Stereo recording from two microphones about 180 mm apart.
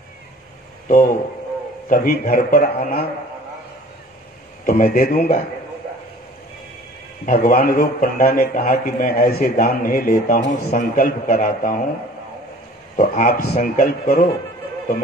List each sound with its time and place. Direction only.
0.8 s a man's voice: 50° left (ahead or behind)
4.6 s a man's voice: 55° left (ahead or behind)
7.2 s a man's voice: 50° left (ahead or behind)
12.9 s a man's voice: 45° left (ahead or behind)